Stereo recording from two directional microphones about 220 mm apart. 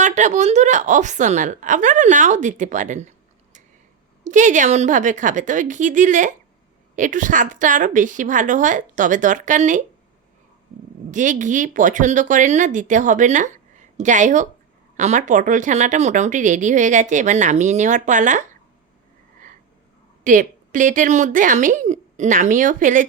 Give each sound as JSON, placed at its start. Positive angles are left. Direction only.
{"t": 0.0, "sound": "speech", "side_deg": -35}
{"t": 4.2, "sound": "speech", "side_deg": -35}
{"t": 11.1, "sound": "speech", "side_deg": -35}
{"t": 20.2, "sound": "speech", "side_deg": -35}